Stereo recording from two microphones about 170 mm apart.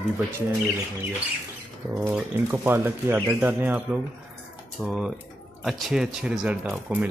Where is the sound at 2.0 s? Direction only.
10° right (ahead or behind).